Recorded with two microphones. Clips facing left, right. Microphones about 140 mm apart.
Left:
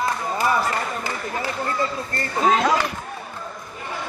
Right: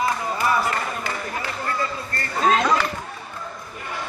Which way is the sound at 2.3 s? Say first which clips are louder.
Even; 10° left (ahead or behind).